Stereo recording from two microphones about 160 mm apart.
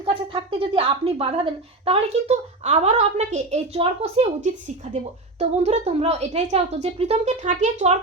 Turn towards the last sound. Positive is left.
turn(degrees=-45)  # may be behind; listen again after turning